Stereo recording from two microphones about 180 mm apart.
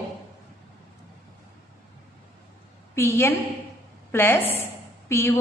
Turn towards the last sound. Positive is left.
turn(degrees=15)  # may be behind; listen again after turning